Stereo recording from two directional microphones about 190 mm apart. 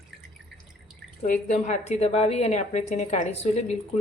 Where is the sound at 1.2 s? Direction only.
45° left (ahead or behind).